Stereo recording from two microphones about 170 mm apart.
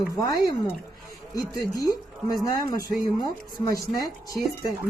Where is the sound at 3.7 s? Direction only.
20° left (ahead or behind).